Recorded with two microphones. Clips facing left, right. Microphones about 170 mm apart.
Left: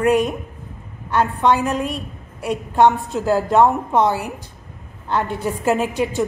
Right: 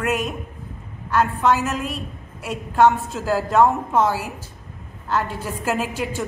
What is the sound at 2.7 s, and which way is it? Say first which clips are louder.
A woman's voice: left 1 dB; 25° left (ahead or behind).